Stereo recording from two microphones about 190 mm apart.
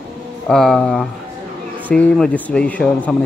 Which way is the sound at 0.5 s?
Centre (ahead or behind).